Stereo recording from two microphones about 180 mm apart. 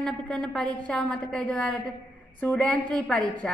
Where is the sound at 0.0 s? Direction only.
5° left (ahead or behind).